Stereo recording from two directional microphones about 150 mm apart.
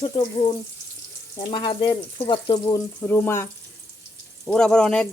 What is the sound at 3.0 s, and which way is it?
Frying, 15° left (ahead or behind).